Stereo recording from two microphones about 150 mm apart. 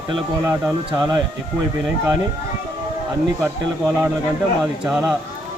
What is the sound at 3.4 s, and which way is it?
Speech, 10° right (ahead or behind).